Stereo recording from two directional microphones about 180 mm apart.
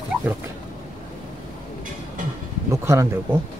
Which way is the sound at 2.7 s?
15° right (ahead or behind).